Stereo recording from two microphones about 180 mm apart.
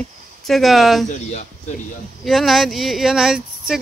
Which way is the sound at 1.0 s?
40° left (ahead or behind).